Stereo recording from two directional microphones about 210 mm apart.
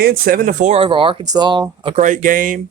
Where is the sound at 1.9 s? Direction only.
40° right (ahead or behind).